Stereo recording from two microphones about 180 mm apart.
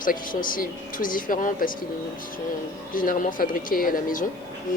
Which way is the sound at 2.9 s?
50° left (ahead or behind).